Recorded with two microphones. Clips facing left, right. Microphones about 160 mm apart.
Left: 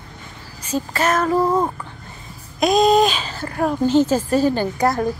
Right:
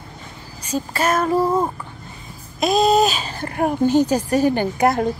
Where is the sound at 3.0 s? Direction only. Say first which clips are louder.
Left 1 dB; 40° right (ahead or behind).